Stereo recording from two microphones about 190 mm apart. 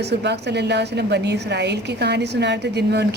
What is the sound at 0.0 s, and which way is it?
Speech, 60° right (ahead or behind).